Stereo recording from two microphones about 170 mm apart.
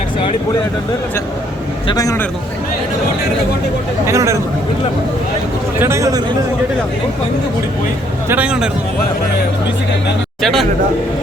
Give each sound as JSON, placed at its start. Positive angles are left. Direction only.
{"t": 1.9, "sound": "a man's voice", "side_deg": 20}
{"t": 4.0, "sound": "speech", "side_deg": -15}
{"t": 5.8, "sound": "a man's voice", "side_deg": -15}
{"t": 8.3, "sound": "speech", "side_deg": -5}
{"t": 10.4, "sound": "speech", "side_deg": 0}